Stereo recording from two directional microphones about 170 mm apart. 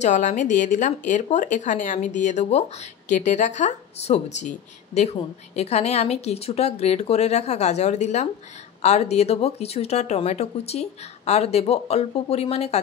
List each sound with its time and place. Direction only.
0.0 s speech: 45° left (ahead or behind)